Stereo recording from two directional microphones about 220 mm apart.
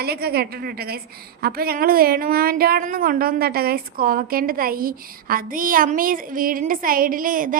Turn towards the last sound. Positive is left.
turn(degrees=-40)  # may be behind; listen again after turning